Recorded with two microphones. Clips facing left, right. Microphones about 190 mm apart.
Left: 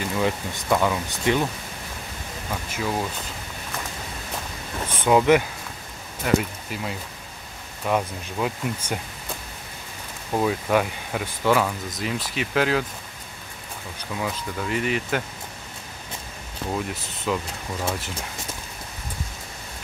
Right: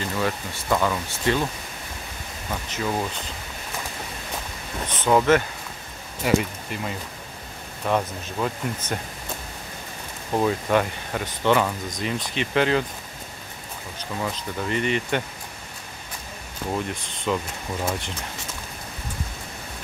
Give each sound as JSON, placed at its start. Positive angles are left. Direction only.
{"t": 0.2, "sound": "speech", "side_deg": 15}
{"t": 2.7, "sound": "speech", "side_deg": 5}
{"t": 4.8, "sound": "a sound", "side_deg": 15}
{"t": 6.2, "sound": "speech", "side_deg": 0}
{"t": 10.3, "sound": "speech", "side_deg": 0}
{"t": 14.2, "sound": "speech", "side_deg": 5}
{"t": 16.7, "sound": "speech", "side_deg": 5}